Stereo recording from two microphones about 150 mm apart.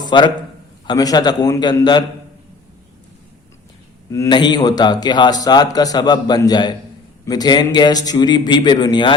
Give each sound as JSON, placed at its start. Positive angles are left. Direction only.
{"t": 0.0, "sound": "a man's voice", "side_deg": 30}
{"t": 4.3, "sound": "a man's voice", "side_deg": 30}